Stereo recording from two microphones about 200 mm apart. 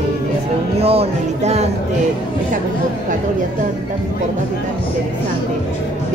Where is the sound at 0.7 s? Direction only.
30° right (ahead or behind).